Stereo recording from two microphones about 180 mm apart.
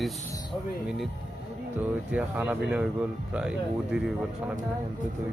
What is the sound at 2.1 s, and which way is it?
Speech, 10° right (ahead or behind).